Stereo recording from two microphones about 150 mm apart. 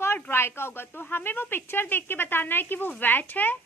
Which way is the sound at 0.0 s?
15° left (ahead or behind).